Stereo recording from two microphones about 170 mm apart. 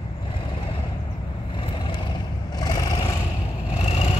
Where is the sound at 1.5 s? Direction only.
30° left (ahead or behind).